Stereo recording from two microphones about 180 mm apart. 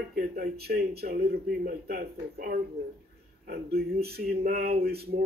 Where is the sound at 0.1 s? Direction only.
60° right (ahead or behind).